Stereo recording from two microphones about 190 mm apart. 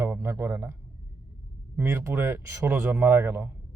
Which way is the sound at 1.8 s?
10° right (ahead or behind).